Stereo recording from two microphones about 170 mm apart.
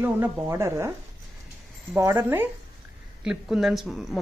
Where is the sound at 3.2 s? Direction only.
5° right (ahead or behind).